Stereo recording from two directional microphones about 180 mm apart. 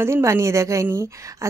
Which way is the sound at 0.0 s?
15° right (ahead or behind).